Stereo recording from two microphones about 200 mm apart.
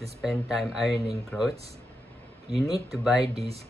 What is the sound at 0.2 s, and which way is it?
Speech, centre (ahead or behind).